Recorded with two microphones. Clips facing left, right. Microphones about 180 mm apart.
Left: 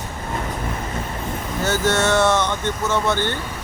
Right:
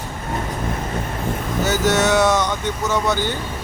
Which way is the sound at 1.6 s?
20° right (ahead or behind).